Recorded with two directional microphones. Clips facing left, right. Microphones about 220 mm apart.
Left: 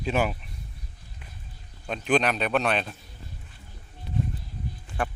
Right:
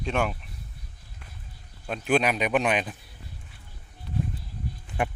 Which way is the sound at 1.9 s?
10° right (ahead or behind).